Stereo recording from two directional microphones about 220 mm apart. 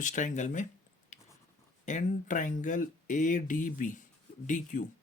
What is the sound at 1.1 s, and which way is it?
Writing, 35° left (ahead or behind).